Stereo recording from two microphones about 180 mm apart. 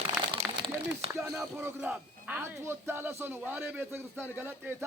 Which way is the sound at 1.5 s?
10° right (ahead or behind).